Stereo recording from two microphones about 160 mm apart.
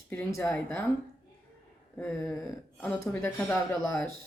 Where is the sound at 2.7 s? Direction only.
10° left (ahead or behind).